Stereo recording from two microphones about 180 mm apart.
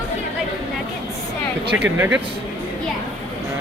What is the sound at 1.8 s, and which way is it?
Speech, 10° right (ahead or behind).